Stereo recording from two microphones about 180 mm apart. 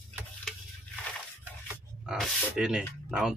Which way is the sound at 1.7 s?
5° right (ahead or behind).